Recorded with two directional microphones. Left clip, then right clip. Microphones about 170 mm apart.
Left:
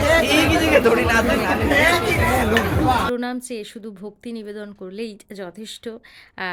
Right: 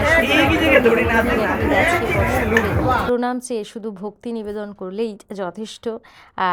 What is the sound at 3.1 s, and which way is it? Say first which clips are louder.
A woman's voice: right 5 dB; 10° left (ahead or behind).